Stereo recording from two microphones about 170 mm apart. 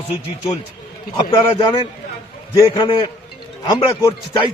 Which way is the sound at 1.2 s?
30° left (ahead or behind).